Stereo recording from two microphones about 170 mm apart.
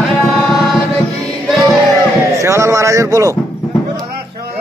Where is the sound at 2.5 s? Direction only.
15° right (ahead or behind).